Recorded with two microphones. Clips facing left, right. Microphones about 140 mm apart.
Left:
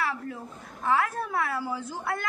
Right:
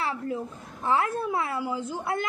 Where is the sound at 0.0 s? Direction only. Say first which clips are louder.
Right 2 dB; 25° right (ahead or behind).